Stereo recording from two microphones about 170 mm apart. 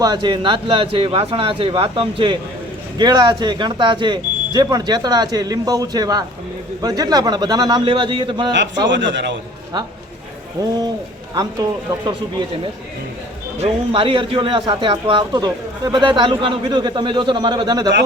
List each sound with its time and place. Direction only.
0.0 s a man's voice: 25° right (ahead or behind)
8.5 s speech: 90° right
11.3 s speech: 20° right (ahead or behind)
13.6 s speech: 30° right (ahead or behind)